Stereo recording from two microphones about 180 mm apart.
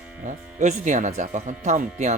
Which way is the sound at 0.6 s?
45° right (ahead or behind).